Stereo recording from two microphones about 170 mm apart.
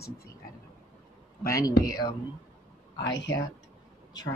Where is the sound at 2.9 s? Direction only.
90° left.